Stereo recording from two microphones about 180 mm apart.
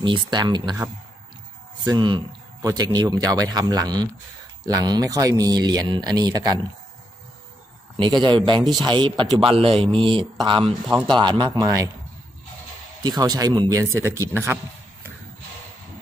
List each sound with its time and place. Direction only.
0.0 s speech: 25° right (ahead or behind)
1.9 s speech: 25° right (ahead or behind)
8.0 s speech: 25° right (ahead or behind)
13.0 s speech: 20° right (ahead or behind)